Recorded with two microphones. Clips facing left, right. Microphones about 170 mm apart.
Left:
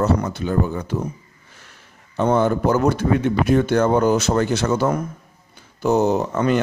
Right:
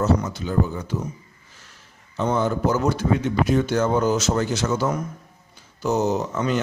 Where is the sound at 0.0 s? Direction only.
60° left (ahead or behind).